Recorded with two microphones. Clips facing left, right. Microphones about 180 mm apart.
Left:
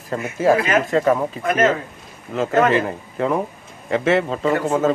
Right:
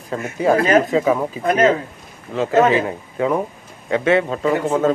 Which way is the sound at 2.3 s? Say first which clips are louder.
Right 2 dB; centre (ahead or behind).